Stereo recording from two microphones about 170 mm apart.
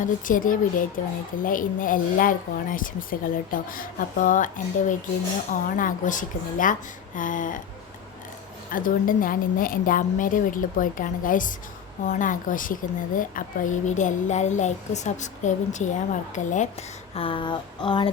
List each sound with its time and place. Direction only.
0.0 s a woman's voice: 50° left (ahead or behind)
8.7 s a woman's voice: 55° left (ahead or behind)
17.2 s a sound: 30° left (ahead or behind)